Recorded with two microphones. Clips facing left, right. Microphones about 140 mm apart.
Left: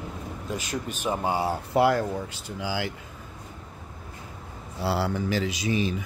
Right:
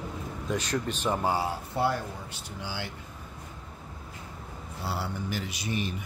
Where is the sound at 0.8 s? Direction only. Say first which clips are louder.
Even; 10° left (ahead or behind).